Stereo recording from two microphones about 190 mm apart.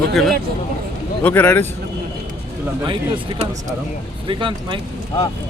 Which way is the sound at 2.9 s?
25° right (ahead or behind).